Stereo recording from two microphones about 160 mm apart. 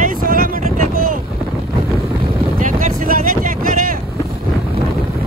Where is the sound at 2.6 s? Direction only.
60° right (ahead or behind).